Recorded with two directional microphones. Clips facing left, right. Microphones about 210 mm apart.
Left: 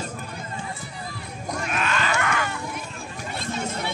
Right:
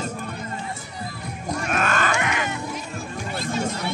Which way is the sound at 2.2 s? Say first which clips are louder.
Even; 20° right (ahead or behind).